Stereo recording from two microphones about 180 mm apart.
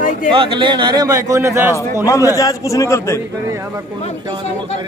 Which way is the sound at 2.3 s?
20° left (ahead or behind).